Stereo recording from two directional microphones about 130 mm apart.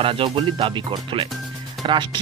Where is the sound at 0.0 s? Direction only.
45° right (ahead or behind).